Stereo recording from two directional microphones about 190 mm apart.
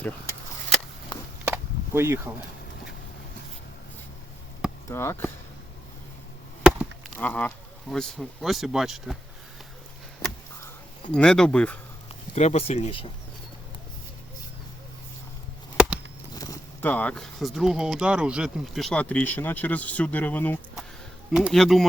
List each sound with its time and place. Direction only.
1.5 s a sound: 15° right (ahead or behind)
4.9 s speech: 15° left (ahead or behind)
6.6 s chop: 5° right (ahead or behind)
7.2 s speech: 10° left (ahead or behind)
11.1 s speech: 5° left (ahead or behind)
12.3 s speech: 35° left (ahead or behind)
16.3 s speech: 20° left (ahead or behind); by 21.8 s centre (ahead or behind)